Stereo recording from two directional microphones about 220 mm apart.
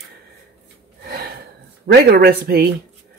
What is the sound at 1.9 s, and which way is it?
Speech, 45° right (ahead or behind).